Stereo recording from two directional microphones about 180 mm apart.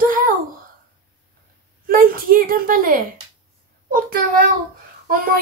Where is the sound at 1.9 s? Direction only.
55° right (ahead or behind).